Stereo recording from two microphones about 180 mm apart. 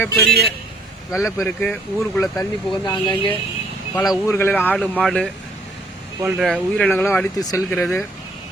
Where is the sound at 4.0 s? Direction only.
Centre (ahead or behind).